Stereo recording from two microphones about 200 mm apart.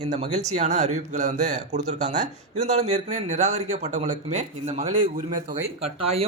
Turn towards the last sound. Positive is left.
turn(degrees=-30)  # may be behind; listen again after turning